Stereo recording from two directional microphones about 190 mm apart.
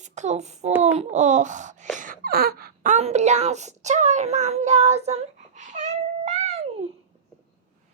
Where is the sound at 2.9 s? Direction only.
35° right (ahead or behind).